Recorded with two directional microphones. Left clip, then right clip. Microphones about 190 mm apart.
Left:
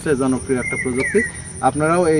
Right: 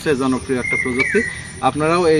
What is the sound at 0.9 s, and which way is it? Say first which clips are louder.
Speech: even; centre (ahead or behind).